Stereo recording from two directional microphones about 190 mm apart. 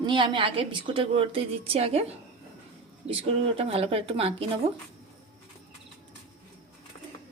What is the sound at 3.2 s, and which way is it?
Speech, 30° right (ahead or behind).